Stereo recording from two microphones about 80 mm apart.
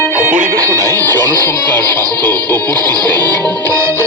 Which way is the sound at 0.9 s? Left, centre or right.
Left.